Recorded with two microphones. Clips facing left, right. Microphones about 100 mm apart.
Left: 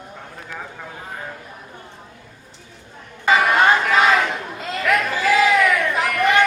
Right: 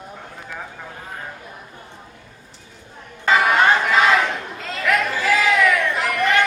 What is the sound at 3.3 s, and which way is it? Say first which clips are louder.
Chatter: even; centre (ahead or behind).